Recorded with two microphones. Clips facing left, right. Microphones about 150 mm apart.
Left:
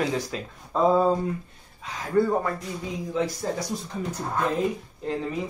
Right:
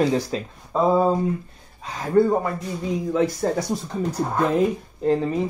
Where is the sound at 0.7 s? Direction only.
10° right (ahead or behind).